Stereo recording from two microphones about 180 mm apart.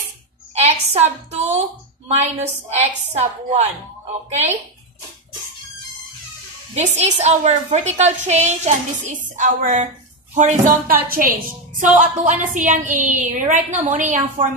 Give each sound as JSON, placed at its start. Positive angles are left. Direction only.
{"t": 0.6, "sound": "a woman's voice", "side_deg": -35}
{"t": 6.7, "sound": "a woman's voice", "side_deg": -40}